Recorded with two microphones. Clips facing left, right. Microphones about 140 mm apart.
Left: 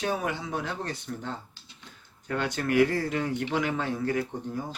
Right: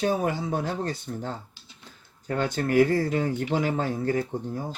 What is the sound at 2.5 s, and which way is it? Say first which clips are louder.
Speech: right 3 dB; 35° right (ahead or behind).